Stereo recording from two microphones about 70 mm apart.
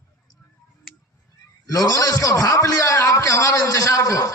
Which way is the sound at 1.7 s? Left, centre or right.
Left.